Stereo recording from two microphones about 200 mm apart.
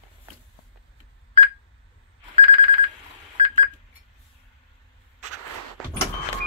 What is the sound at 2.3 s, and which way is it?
Telephone bell ringing, 35° right (ahead or behind).